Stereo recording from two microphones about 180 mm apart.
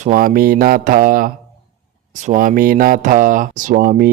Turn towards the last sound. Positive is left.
turn(degrees=-55)  # may be behind; listen again after turning